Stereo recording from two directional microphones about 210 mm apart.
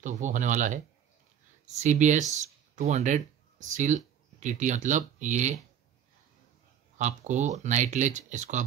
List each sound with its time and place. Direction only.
0.0 s speech: 35° right (ahead or behind)
7.0 s speech: 35° right (ahead or behind)